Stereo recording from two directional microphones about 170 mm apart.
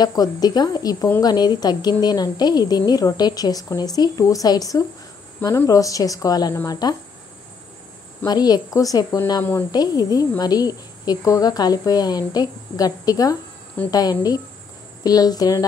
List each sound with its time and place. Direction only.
0.0 s a woman's voice: 20° left (ahead or behind)
8.3 s a woman's voice: 25° left (ahead or behind)
9.7 s a woman's voice: 25° left (ahead or behind)